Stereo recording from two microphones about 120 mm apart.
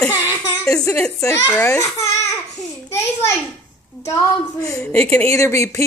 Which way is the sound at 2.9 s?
25° left (ahead or behind).